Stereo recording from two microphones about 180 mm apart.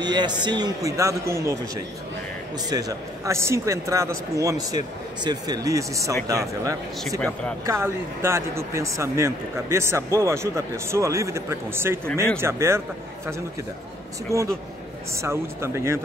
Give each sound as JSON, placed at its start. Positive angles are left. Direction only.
{"t": 0.0, "sound": "speech", "side_deg": -25}
{"t": 2.7, "sound": "speech", "side_deg": -20}
{"t": 7.2, "sound": "speech", "side_deg": 10}
{"t": 7.6, "sound": "speech", "side_deg": -15}
{"t": 14.3, "sound": "speech", "side_deg": -15}